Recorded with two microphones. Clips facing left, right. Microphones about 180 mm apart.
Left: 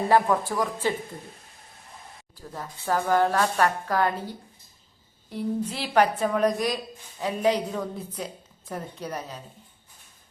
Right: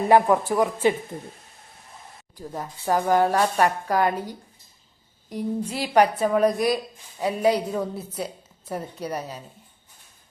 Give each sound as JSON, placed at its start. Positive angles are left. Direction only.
{"t": 0.1, "sound": "speech", "side_deg": -20}
{"t": 2.3, "sound": "a woman's voice", "side_deg": -15}